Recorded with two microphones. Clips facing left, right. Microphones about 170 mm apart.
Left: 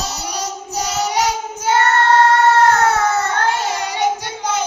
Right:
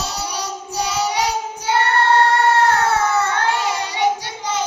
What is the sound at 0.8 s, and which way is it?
Child singing, 45° left (ahead or behind).